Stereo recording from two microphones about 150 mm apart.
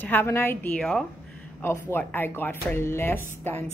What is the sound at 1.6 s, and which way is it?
Speech, 15° left (ahead or behind).